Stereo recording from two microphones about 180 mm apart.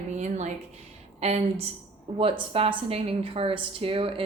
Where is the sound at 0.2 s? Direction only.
40° right (ahead or behind).